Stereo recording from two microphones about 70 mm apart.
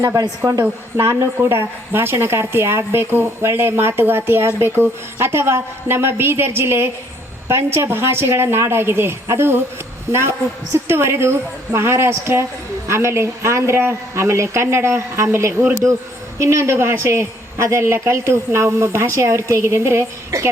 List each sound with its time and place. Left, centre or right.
0.2 s a woman's voice: right
0.9 s a woman's voice: right